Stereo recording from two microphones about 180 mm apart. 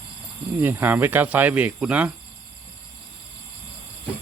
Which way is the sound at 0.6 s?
10° right (ahead or behind).